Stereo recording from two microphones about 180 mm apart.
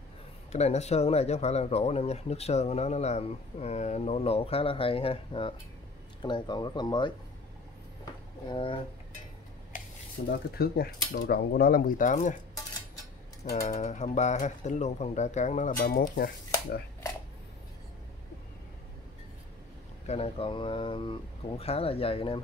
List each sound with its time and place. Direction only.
0.5 s speech: 35° left (ahead or behind)
8.0 s a sound: 25° left (ahead or behind)
9.7 s a sound: 45° left (ahead or behind)
10.2 s speech: 55° left (ahead or behind)
13.7 s speech: 40° left (ahead or behind)
20.1 s speech: 35° left (ahead or behind)